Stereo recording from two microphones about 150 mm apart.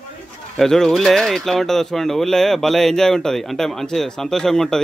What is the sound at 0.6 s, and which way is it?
Speech, 5° left (ahead or behind).